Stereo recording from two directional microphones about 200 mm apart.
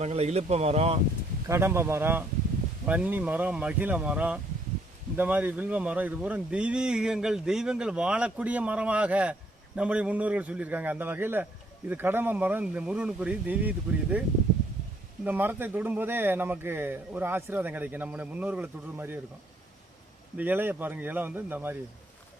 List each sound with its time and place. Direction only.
0.0 s speech: 35° right (ahead or behind)
1.5 s speech: 15° right (ahead or behind)
20.3 s speech: 10° right (ahead or behind)